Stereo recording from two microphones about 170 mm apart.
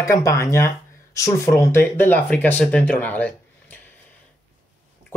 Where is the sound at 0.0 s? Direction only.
20° left (ahead or behind).